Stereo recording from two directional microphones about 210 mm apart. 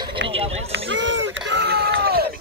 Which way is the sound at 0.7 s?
60° right (ahead or behind).